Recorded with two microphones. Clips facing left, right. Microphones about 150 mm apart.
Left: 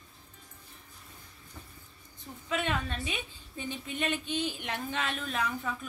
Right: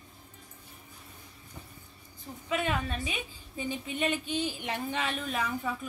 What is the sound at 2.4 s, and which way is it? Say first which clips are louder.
A woman's voice: right 1 dB; 5° right (ahead or behind).